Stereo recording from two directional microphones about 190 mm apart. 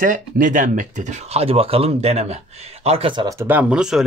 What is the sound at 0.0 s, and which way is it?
Speech, 45° right (ahead or behind).